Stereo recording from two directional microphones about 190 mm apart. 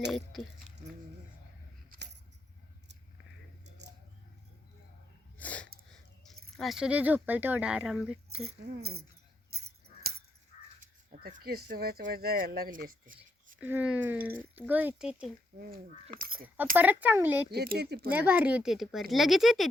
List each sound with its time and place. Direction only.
5.4 s sneeze: 5° left (ahead or behind)
6.6 s speech: centre (ahead or behind)
8.7 s speech: 55° right (ahead or behind)
10.0 s caw: 50° right (ahead or behind)
10.8 s speech: 45° right (ahead or behind)
13.6 s speech: 10° right (ahead or behind)
15.5 s speech: 50° right (ahead or behind)
16.7 s speech: 10° right (ahead or behind)
17.5 s speech: 55° right (ahead or behind)
18.1 s speech: 10° right (ahead or behind)